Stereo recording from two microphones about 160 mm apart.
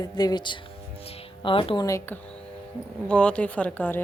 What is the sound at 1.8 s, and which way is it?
Speech, 20° left (ahead or behind).